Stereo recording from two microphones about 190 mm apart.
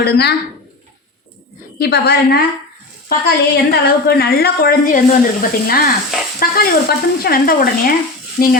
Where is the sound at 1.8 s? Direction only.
55° left (ahead or behind).